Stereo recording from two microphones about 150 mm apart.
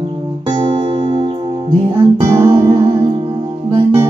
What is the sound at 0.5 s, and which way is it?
Music, 30° right (ahead or behind).